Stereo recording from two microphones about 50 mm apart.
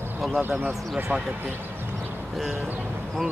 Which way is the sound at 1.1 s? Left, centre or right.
Right.